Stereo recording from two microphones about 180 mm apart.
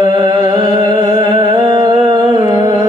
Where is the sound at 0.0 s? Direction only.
25° right (ahead or behind).